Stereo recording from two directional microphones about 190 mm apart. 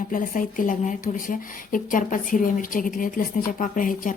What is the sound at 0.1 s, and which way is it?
Speech, 45° left (ahead or behind).